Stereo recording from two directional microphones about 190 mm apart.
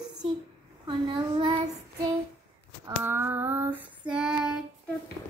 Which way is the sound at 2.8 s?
10° right (ahead or behind).